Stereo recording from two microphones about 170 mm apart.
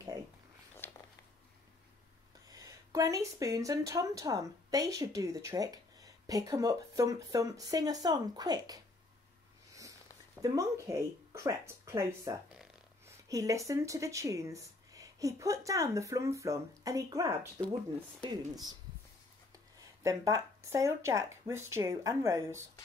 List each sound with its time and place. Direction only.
0.8 s a sound: 10° left (ahead or behind)
2.4 s speech: 20° right (ahead or behind)
10.4 s speech: 20° right (ahead or behind)